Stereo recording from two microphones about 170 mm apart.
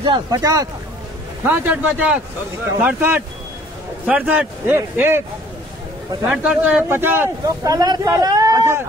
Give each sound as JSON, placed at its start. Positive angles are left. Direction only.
{"t": 0.0, "sound": "a man's voice", "side_deg": -25}
{"t": 6.3, "sound": "speech", "side_deg": -5}